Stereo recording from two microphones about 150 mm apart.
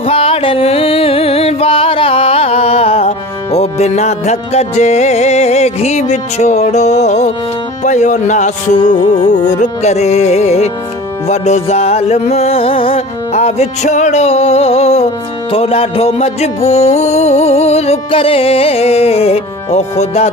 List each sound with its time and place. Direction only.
0.0 s music: 40° left (ahead or behind)